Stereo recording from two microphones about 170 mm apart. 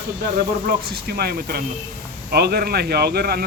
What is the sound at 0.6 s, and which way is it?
Speech, 65° right (ahead or behind).